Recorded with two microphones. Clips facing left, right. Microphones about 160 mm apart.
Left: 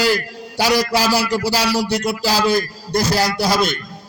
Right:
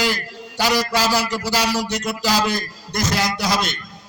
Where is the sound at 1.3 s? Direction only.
35° left (ahead or behind).